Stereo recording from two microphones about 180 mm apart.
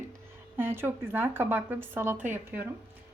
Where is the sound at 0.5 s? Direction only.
10° right (ahead or behind).